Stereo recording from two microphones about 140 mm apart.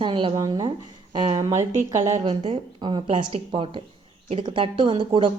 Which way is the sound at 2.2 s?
40° right (ahead or behind).